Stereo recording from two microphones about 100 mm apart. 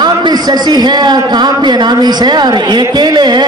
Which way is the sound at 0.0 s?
45° right (ahead or behind).